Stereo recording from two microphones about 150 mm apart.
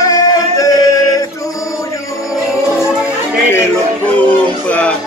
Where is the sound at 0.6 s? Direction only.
25° left (ahead or behind).